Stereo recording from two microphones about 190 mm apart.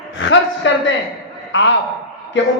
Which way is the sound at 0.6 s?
75° left (ahead or behind).